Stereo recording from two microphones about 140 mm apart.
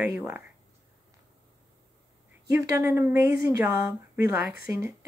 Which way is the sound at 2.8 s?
20° right (ahead or behind).